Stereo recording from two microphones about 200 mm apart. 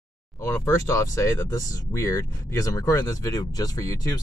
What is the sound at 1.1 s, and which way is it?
Speech, 15° left (ahead or behind).